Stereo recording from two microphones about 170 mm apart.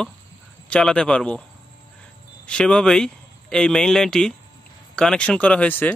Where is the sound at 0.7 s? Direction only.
5° left (ahead or behind).